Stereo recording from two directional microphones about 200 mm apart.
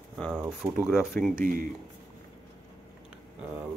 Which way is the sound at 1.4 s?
45° right (ahead or behind).